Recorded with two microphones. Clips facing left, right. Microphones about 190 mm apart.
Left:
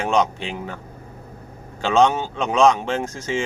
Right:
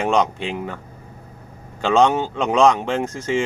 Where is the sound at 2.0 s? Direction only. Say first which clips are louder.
Right 2 dB; 15° right (ahead or behind).